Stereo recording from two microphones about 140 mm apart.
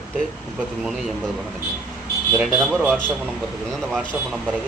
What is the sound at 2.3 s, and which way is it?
Speech, centre (ahead or behind).